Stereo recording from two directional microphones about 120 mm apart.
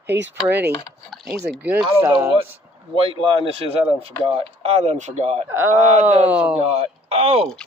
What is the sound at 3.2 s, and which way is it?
Speech, 50° right (ahead or behind).